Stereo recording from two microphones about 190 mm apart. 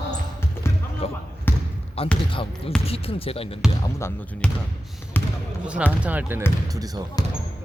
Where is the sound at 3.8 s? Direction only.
10° left (ahead or behind).